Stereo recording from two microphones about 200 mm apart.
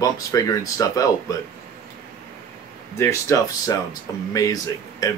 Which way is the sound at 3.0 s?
15° left (ahead or behind).